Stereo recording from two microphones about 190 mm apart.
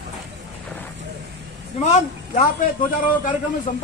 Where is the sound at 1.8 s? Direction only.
35° left (ahead or behind).